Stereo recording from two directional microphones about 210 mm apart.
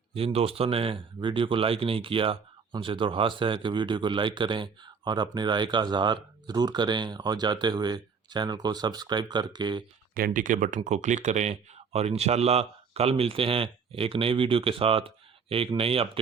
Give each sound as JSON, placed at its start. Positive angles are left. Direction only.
{"t": 0.1, "sound": "speech", "side_deg": -25}
{"t": 10.2, "sound": "speech", "side_deg": -40}